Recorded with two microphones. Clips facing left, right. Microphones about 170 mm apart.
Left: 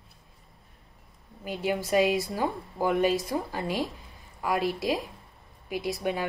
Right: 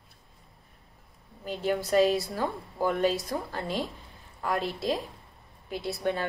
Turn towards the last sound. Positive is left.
turn(degrees=15)  # may be behind; listen again after turning